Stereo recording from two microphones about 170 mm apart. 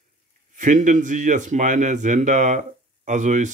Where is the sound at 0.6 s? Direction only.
45° right (ahead or behind).